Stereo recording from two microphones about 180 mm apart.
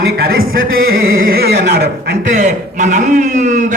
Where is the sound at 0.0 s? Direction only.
60° right (ahead or behind).